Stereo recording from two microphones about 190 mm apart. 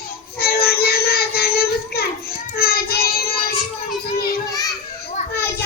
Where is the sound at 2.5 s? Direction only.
55° left (ahead or behind).